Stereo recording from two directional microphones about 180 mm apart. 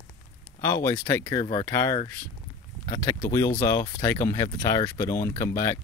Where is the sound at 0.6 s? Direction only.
15° left (ahead or behind).